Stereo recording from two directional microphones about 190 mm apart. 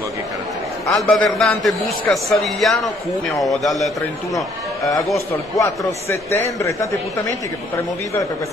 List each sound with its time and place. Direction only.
0.8 s a man's voice: centre (ahead or behind)
5.1 s a man's voice: 15° left (ahead or behind)